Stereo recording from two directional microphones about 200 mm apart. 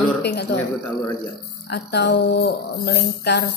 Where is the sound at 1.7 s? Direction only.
55° left (ahead or behind).